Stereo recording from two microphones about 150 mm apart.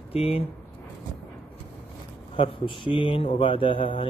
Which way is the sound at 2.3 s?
35° left (ahead or behind).